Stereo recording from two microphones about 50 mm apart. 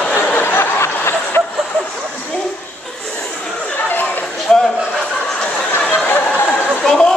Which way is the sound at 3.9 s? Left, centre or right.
Left.